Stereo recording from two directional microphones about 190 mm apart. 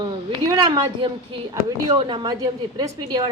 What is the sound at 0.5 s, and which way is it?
A woman's voice, 25° right (ahead or behind).